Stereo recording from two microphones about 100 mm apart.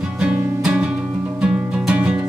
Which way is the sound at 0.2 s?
15° right (ahead or behind).